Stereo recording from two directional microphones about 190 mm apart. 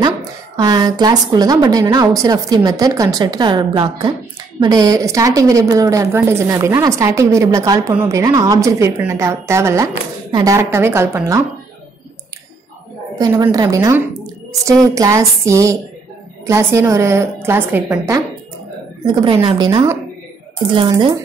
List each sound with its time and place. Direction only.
0.0 s a woman's voice: 20° right (ahead or behind)
13.2 s a woman's voice: 15° right (ahead or behind)
19.0 s a woman's voice: 25° right (ahead or behind)